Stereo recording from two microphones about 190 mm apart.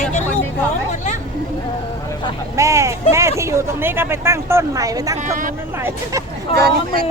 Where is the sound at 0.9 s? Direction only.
40° left (ahead or behind).